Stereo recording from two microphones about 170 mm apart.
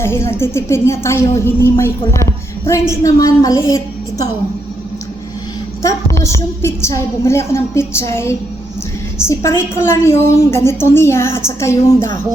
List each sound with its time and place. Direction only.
0.0 s a woman's voice: 15° left (ahead or behind)
5.8 s a woman's voice: 15° left (ahead or behind)